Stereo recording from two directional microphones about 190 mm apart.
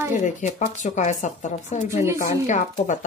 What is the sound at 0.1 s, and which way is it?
Speech, 40° left (ahead or behind).